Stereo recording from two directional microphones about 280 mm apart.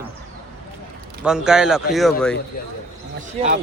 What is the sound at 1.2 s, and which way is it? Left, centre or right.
Speech, centre.